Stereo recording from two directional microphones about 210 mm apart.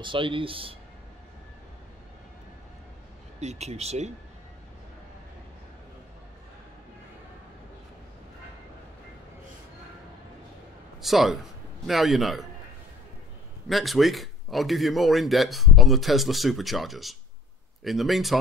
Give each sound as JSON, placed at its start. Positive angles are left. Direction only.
{"t": 0.0, "sound": "speech", "side_deg": -25}
{"t": 3.3, "sound": "speech", "side_deg": -30}
{"t": 11.0, "sound": "a man's voice", "side_deg": 0}
{"t": 13.7, "sound": "a man's voice", "side_deg": 0}